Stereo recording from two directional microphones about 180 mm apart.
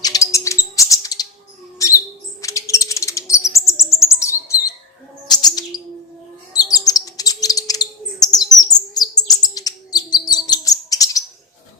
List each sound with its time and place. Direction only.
0.0 s bird: 20° left (ahead or behind)
1.8 s a sound: 20° left (ahead or behind)
2.4 s chirp: 15° left (ahead or behind)
6.5 s bird: 20° left (ahead or behind)